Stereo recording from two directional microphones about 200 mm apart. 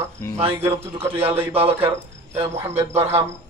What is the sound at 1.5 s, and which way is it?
Speech, 30° right (ahead or behind).